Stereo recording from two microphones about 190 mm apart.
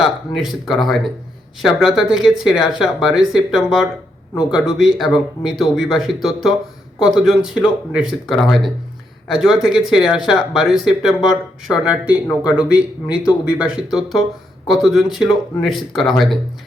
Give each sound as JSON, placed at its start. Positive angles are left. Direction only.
{"t": 0.0, "sound": "speech", "side_deg": 0}